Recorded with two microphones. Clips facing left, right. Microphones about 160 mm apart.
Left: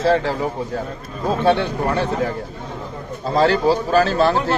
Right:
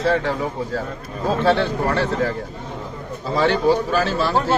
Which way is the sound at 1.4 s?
15° left (ahead or behind).